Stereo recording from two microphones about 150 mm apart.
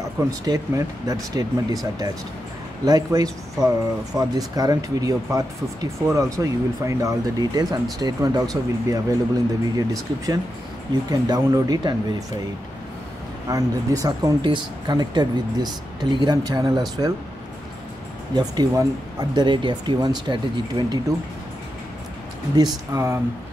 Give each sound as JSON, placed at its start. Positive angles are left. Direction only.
{"t": 0.2, "sound": "speech", "side_deg": -20}
{"t": 13.5, "sound": "speech", "side_deg": -25}
{"t": 18.3, "sound": "speech", "side_deg": -25}
{"t": 22.9, "sound": "speech", "side_deg": -20}